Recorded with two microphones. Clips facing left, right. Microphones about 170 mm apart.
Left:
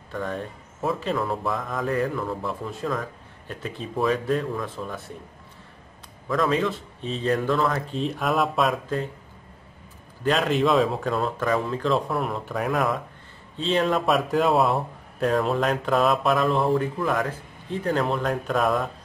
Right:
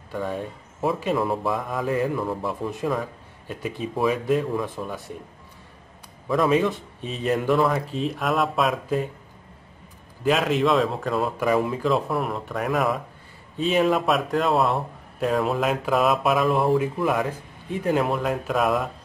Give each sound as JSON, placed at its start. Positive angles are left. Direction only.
{"t": 0.1, "sound": "speech", "side_deg": -10}
{"t": 4.6, "sound": "speech", "side_deg": -15}
{"t": 6.5, "sound": "speech", "side_deg": -15}
{"t": 7.6, "sound": "speech", "side_deg": 0}
{"t": 10.2, "sound": "speech", "side_deg": 0}